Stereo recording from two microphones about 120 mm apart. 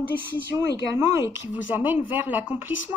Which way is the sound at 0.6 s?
20° right (ahead or behind).